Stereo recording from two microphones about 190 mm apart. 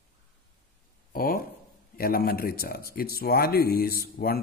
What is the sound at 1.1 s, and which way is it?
Speech, 50° left (ahead or behind).